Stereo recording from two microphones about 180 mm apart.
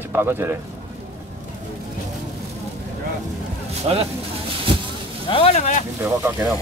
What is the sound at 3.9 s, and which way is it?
Speech, 30° right (ahead or behind).